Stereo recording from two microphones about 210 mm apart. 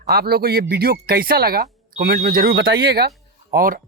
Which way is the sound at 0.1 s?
45° right (ahead or behind).